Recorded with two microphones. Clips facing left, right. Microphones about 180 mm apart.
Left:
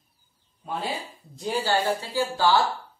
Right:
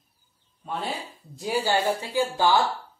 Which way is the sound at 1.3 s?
5° right (ahead or behind).